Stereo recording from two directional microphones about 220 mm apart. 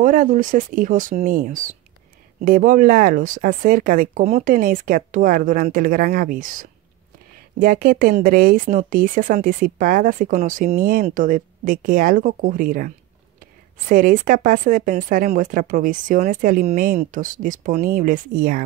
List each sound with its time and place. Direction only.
0.0 s speech: 40° right (ahead or behind)